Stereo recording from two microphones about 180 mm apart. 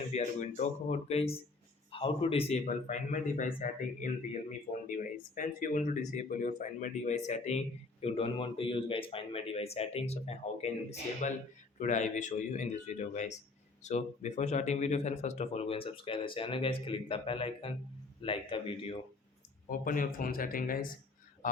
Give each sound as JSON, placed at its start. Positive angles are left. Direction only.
{"t": 0.1, "sound": "a man's voice", "side_deg": 40}
{"t": 19.8, "sound": "a man's voice", "side_deg": 50}